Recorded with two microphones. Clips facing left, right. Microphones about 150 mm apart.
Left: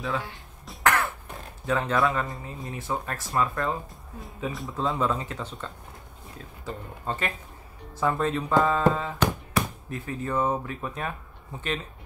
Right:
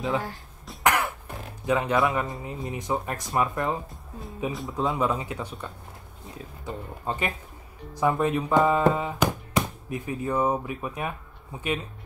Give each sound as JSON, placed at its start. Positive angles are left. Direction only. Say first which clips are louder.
{"t": 0.8, "sound": "music", "louder": "even", "side_deg": -15}
{"t": 1.7, "sound": "speech", "louder": "right 1 dB", "side_deg": -15}
{"t": 4.5, "sound": "speech", "louder": "right 1 dB", "side_deg": 0}
{"t": 4.9, "sound": "speech", "louder": "right 1 dB", "side_deg": -10}